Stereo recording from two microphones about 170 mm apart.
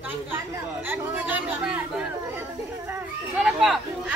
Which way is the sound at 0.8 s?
10° right (ahead or behind).